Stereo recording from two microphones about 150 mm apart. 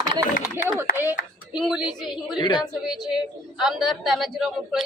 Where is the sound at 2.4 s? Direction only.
30° left (ahead or behind).